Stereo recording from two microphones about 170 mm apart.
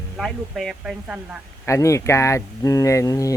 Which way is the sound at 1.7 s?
20° left (ahead or behind).